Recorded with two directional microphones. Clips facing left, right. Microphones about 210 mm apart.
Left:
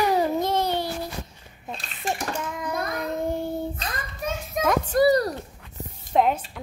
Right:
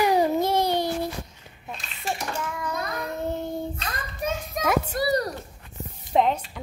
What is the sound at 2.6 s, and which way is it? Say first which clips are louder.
Child singing: left 2 dB; 20° left (ahead or behind).